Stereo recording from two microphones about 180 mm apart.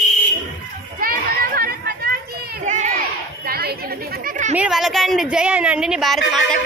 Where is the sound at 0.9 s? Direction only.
55° right (ahead or behind).